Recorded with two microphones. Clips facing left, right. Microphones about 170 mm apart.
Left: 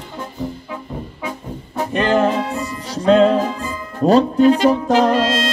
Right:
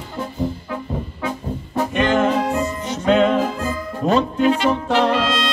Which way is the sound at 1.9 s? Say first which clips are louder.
Left 2 dB; 35° left (ahead or behind).